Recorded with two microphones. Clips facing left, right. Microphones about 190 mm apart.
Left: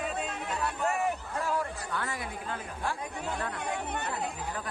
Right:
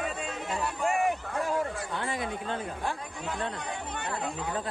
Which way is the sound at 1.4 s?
20° right (ahead or behind).